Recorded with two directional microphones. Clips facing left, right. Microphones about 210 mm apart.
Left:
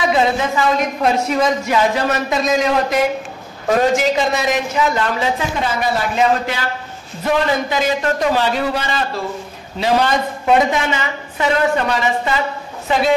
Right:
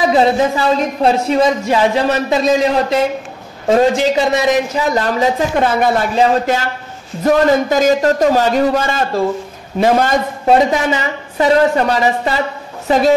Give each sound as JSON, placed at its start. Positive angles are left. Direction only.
{"t": 0.1, "sound": "a man's voice", "side_deg": -35}